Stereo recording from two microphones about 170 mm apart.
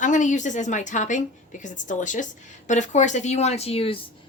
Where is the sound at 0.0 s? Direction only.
45° left (ahead or behind).